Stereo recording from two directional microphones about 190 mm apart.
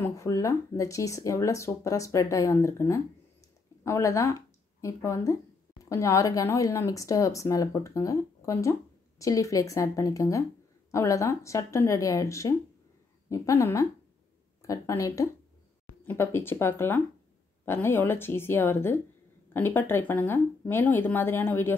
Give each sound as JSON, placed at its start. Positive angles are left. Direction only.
{"t": 0.0, "sound": "speech", "side_deg": 15}